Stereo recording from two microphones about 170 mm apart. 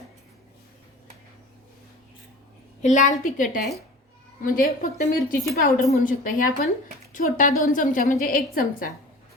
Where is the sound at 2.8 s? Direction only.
45° left (ahead or behind).